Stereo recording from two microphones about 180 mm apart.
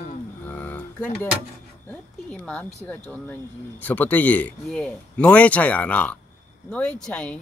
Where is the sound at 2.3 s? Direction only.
5° left (ahead or behind).